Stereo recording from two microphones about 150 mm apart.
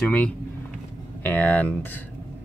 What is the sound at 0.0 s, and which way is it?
Speech, 10° left (ahead or behind).